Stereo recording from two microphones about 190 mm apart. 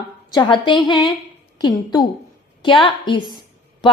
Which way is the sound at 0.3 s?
25° left (ahead or behind).